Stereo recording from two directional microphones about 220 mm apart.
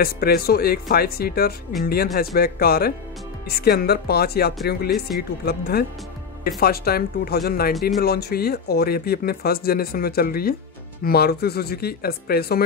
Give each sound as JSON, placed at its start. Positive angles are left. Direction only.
{"t": 0.0, "sound": "speech", "side_deg": 45}